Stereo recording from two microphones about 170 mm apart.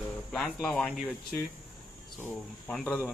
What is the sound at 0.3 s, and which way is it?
Speech, 5° left (ahead or behind).